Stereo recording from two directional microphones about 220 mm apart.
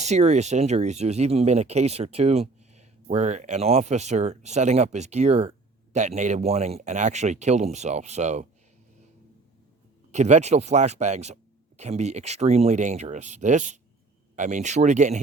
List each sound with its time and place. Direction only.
0.0 s speech: 30° right (ahead or behind)
10.1 s speech: 30° right (ahead or behind)